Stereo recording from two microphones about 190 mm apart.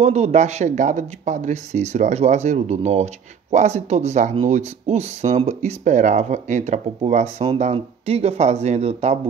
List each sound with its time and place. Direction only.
0.0 s speech: 35° right (ahead or behind)